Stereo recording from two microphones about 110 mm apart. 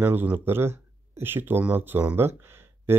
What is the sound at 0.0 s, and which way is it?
Speech, 15° right (ahead or behind).